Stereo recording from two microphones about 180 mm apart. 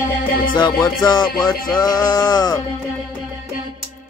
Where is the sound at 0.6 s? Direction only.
20° left (ahead or behind).